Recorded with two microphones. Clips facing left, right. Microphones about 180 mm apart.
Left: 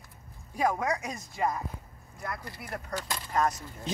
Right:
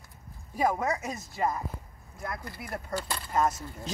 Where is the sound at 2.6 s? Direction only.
5° right (ahead or behind).